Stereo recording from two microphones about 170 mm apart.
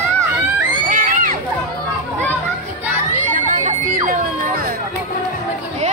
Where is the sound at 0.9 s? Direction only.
55° right (ahead or behind).